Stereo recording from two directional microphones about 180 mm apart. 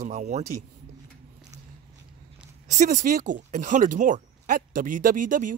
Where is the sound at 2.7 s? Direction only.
45° right (ahead or behind).